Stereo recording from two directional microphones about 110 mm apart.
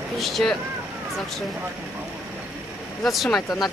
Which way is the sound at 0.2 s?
Centre (ahead or behind).